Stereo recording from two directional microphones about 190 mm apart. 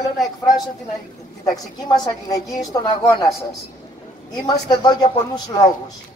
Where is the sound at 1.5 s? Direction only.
20° left (ahead or behind).